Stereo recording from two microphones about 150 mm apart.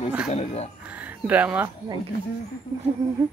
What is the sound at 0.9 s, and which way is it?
Speech, 10° right (ahead or behind).